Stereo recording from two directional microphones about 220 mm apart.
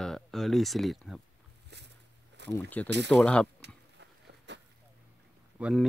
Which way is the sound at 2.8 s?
5° left (ahead or behind).